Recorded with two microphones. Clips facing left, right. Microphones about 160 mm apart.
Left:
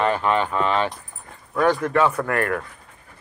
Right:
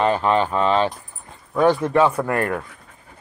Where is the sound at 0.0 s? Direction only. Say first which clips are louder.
Right 2 dB; 25° right (ahead or behind).